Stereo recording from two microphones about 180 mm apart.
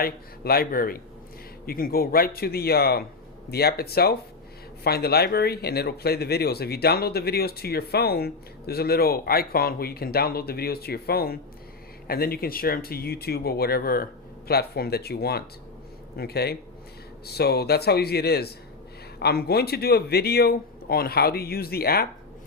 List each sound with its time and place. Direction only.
0.0 s speech: 55° left (ahead or behind)